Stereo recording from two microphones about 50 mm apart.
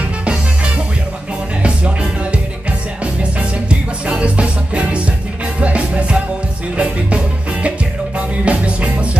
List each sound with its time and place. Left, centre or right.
0.2 s music: right
3.2 s music: right